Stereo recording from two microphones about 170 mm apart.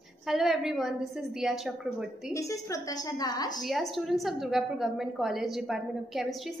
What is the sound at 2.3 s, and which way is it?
A woman's voice, 20° left (ahead or behind).